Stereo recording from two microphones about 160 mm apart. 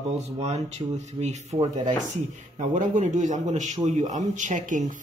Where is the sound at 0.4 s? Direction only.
45° right (ahead or behind).